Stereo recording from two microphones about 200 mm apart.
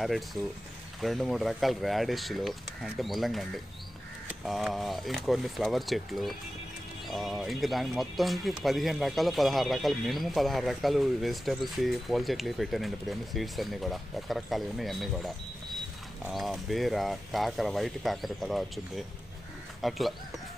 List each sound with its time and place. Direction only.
0.0 s speech: centre (ahead or behind)